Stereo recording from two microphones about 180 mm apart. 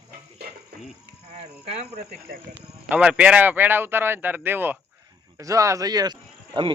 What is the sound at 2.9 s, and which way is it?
A man's voice, 5° right (ahead or behind).